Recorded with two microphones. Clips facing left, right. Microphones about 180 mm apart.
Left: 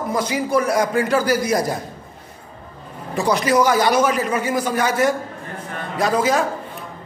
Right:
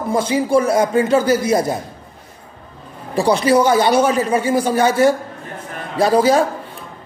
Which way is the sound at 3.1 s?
30° right (ahead or behind).